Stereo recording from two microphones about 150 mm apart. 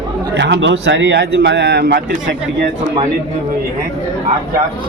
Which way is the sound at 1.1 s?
90° right.